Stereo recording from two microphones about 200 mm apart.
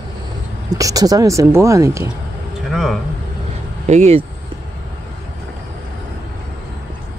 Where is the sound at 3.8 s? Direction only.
35° right (ahead or behind).